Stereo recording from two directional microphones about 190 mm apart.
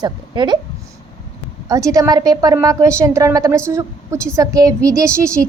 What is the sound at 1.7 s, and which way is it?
A woman's voice, 15° right (ahead or behind).